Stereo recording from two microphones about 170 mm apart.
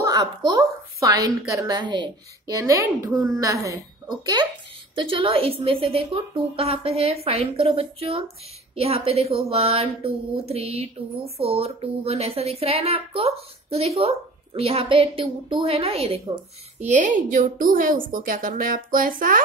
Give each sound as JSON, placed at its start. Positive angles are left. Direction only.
{"t": 0.0, "sound": "a woman's voice", "side_deg": -20}
{"t": 16.8, "sound": "a woman's voice", "side_deg": -45}